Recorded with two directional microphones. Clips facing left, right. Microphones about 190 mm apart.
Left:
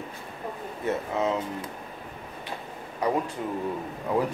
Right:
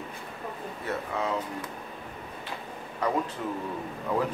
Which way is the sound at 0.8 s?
20° left (ahead or behind).